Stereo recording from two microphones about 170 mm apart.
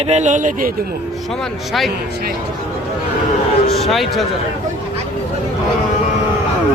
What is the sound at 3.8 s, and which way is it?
Speech, centre (ahead or behind).